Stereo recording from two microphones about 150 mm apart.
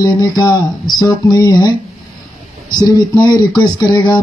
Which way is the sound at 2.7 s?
30° left (ahead or behind).